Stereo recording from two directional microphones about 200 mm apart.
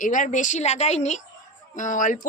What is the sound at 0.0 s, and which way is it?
A woman's voice, 40° left (ahead or behind).